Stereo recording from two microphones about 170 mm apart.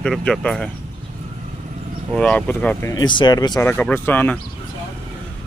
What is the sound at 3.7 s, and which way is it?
Speech, 10° left (ahead or behind).